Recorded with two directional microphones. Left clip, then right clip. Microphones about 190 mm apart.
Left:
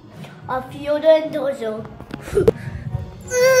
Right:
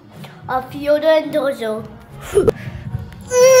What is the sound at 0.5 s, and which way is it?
A child's voice, 20° right (ahead or behind).